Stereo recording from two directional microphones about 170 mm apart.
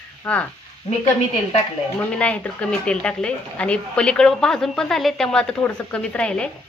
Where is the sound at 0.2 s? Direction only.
10° left (ahead or behind).